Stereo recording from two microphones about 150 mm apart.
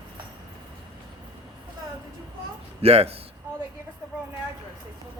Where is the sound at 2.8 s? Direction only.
40° right (ahead or behind).